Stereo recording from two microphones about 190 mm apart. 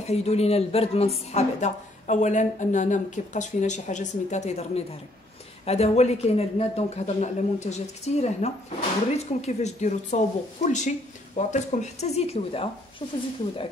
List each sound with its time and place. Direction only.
0.0 s speech: 35° left (ahead or behind)